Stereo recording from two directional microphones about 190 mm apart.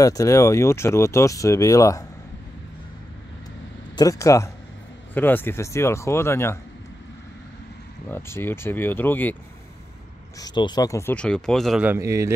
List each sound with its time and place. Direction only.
0.0 s speech: 15° left (ahead or behind)
3.9 s speech: 20° left (ahead or behind)
8.1 s speech: 10° left (ahead or behind)
10.4 s speech: 25° left (ahead or behind); by 12.3 s 15° right (ahead or behind)